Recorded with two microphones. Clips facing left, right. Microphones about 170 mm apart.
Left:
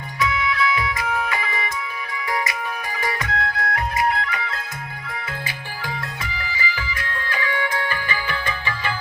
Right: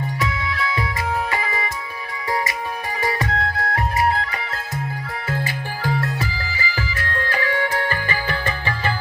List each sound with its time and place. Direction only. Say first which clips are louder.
0.2 s music: left 7 dB; 35° right (ahead or behind)
3.0 s music: right 3 dB; 30° right (ahead or behind)